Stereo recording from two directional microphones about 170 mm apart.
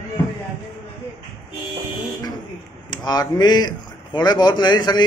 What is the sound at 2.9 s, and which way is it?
A man's voice, 25° left (ahead or behind).